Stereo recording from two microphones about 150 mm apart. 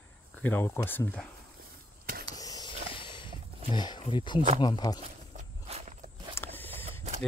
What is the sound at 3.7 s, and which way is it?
Speech, 30° left (ahead or behind).